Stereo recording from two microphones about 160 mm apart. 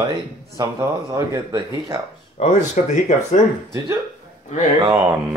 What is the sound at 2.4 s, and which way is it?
Speech, 45° left (ahead or behind).